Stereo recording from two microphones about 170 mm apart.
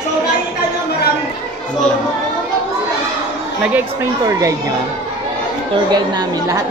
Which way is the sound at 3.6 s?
10° right (ahead or behind).